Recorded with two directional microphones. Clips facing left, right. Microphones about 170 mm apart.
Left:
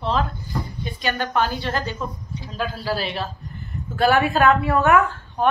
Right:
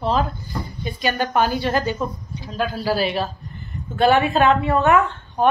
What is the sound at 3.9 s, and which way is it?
Speech, 25° right (ahead or behind).